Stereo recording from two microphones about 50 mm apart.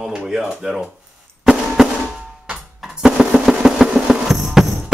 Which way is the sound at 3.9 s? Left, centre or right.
Centre.